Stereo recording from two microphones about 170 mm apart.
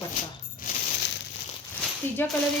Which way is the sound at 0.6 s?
55° left (ahead or behind).